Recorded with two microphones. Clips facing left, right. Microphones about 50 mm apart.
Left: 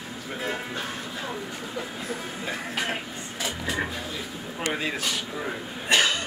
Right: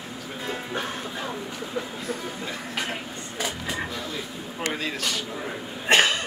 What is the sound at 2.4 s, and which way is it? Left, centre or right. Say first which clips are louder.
Music: left 1 dB; centre.